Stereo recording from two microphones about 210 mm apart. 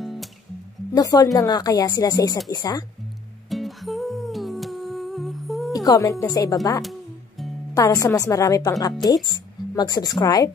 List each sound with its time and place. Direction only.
0.0 s music: centre (ahead or behind)
0.9 s a woman's voice: 15° left (ahead or behind)
3.4 s humming: centre (ahead or behind)
5.7 s speech: 15° left (ahead or behind)
6.8 s music: centre (ahead or behind)
7.7 s a woman's voice: 15° left (ahead or behind)